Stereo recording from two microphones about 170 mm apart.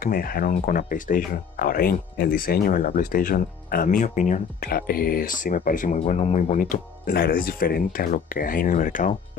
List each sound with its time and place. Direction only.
0.0 s speech: 55° left (ahead or behind)
5.9 s speech: 35° left (ahead or behind)